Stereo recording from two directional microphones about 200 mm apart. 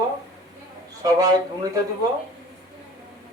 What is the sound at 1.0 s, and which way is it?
Speech, 20° right (ahead or behind).